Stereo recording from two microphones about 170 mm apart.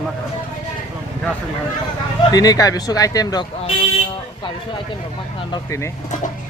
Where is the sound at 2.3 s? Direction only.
20° left (ahead or behind).